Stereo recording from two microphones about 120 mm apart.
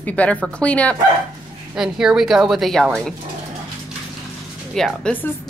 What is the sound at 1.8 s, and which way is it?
A woman's voice, 5° right (ahead or behind).